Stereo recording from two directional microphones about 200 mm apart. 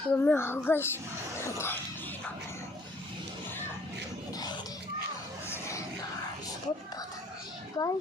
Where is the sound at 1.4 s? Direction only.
15° left (ahead or behind).